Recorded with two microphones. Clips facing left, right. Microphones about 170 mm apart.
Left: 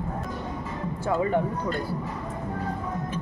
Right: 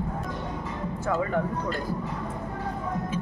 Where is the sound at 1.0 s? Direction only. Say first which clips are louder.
Left 3 dB; 25° left (ahead or behind).